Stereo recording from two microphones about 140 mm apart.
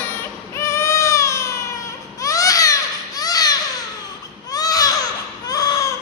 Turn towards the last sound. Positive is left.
turn(degrees=25)  # may be behind; listen again after turning